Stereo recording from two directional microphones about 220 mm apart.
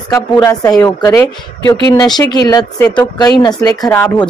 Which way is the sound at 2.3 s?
15° left (ahead or behind).